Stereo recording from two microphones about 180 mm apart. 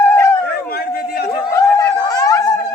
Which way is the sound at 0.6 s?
55° left (ahead or behind).